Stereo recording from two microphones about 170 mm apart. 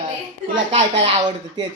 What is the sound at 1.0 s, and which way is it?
Speech, 25° right (ahead or behind).